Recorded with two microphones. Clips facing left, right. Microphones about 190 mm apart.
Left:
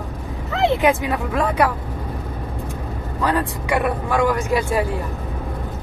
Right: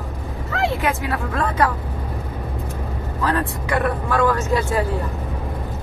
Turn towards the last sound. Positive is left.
turn(degrees=15)  # may be behind; listen again after turning